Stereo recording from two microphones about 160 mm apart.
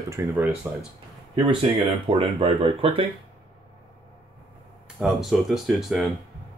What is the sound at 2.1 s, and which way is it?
Speech, 35° right (ahead or behind).